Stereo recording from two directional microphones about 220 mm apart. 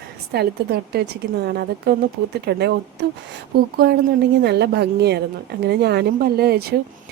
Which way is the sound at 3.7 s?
45° right (ahead or behind).